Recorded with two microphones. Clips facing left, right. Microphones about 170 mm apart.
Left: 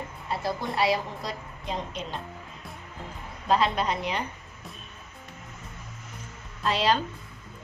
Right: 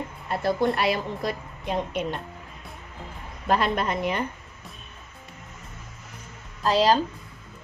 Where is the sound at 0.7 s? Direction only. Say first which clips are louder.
Even; 60° right (ahead or behind).